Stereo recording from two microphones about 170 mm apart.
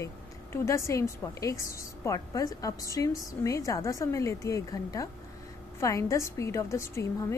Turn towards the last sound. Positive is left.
turn(degrees=15)  # may be behind; listen again after turning